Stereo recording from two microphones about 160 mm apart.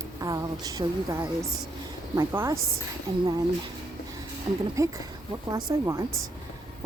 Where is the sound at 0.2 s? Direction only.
25° right (ahead or behind).